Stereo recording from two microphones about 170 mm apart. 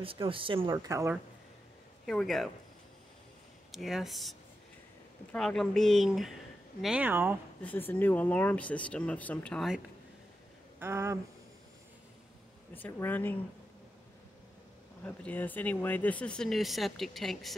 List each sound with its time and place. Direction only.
0.0 s speech: 30° right (ahead or behind)
0.8 s speech: 20° right (ahead or behind)
2.0 s speech: centre (ahead or behind)
3.7 s speech: centre (ahead or behind)
7.6 s speech: 10° left (ahead or behind)
10.8 s speech: 15° right (ahead or behind)
12.7 s speech: 10° left (ahead or behind)
15.0 s speech: 10° left (ahead or behind)